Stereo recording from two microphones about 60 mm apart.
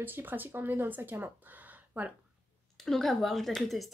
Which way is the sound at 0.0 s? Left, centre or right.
Right.